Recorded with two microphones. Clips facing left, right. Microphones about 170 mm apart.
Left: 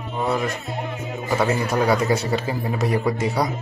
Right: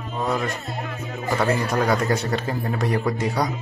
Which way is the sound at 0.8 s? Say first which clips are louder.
Left 2 dB; 20° left (ahead or behind).